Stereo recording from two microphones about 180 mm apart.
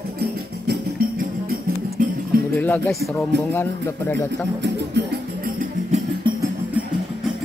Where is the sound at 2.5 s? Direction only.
10° left (ahead or behind).